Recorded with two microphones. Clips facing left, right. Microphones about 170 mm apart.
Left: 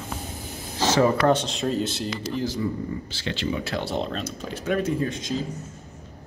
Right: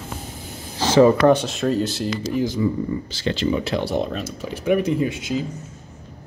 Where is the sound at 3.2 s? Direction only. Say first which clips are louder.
Right 7 dB; 35° right (ahead or behind).